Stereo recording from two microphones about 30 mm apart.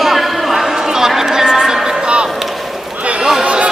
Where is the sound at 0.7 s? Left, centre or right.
Centre.